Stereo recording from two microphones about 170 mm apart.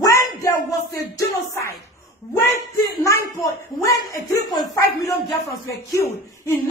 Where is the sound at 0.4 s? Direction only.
20° left (ahead or behind).